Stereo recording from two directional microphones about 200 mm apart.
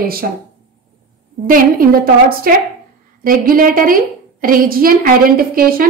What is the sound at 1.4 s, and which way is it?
A woman's voice, 45° right (ahead or behind).